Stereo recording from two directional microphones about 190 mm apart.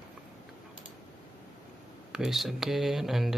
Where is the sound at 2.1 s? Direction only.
Centre (ahead or behind).